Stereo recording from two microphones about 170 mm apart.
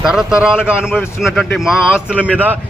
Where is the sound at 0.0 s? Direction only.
5° right (ahead or behind).